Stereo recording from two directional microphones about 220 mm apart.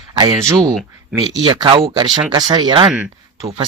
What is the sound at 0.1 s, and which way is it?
Speech, 20° right (ahead or behind).